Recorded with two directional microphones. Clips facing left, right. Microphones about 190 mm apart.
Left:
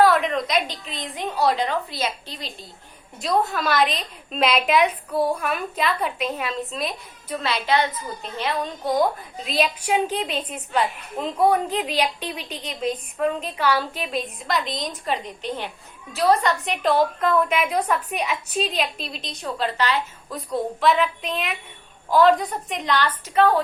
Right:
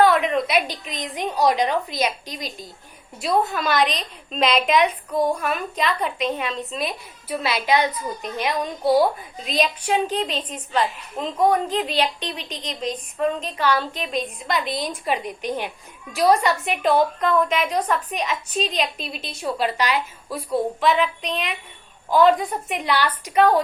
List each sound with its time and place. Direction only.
0.0 s a woman's voice: centre (ahead or behind)
3.2 s a woman's voice: centre (ahead or behind)
9.5 s a woman's voice: 5° left (ahead or behind); by 23.6 s 15° right (ahead or behind)